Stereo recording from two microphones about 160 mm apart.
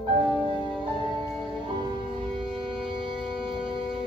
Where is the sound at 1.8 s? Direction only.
30° right (ahead or behind).